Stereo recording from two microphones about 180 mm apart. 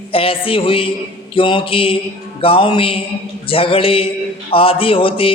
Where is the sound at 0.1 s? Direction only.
30° left (ahead or behind).